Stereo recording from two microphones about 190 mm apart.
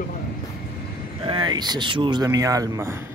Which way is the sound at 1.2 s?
25° right (ahead or behind).